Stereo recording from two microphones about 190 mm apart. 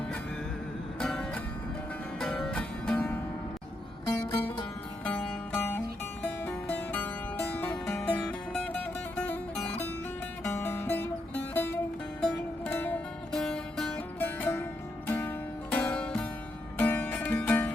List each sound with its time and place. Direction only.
0.9 s music: 5° left (ahead or behind)
4.0 s music: 20° left (ahead or behind)
5.0 s music: 10° left (ahead or behind)